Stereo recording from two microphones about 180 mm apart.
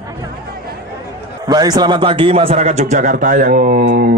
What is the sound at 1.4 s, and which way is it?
A man's voice, 20° right (ahead or behind).